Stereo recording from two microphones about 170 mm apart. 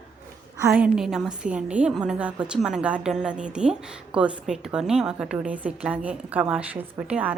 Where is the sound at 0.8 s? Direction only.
5° right (ahead or behind).